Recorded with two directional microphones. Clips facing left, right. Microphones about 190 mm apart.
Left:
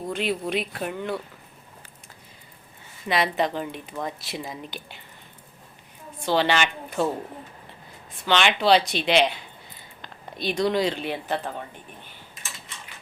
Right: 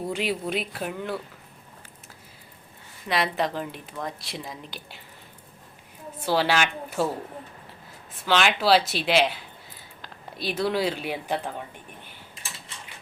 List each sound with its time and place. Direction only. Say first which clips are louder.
0.1 s speech: left 3 dB; 10° right (ahead or behind)
3.1 s speech: left 2 dB; centre (ahead or behind)
6.2 s a woman's voice: left 1 dB; 5° right (ahead or behind)
8.2 s speech: left 1 dB; 5° right (ahead or behind)
12.3 s typing: even; 30° right (ahead or behind)